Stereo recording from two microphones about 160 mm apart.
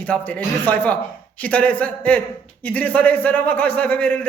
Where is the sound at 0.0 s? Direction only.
10° left (ahead or behind).